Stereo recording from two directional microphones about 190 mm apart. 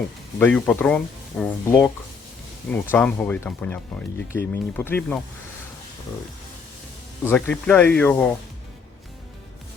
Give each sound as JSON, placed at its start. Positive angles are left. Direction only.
{"t": 0.3, "sound": "speech", "side_deg": 10}
{"t": 2.9, "sound": "speech", "side_deg": 10}
{"t": 7.3, "sound": "speech", "side_deg": 10}